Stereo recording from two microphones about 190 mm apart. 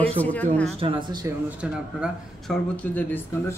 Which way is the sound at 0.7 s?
30° right (ahead or behind).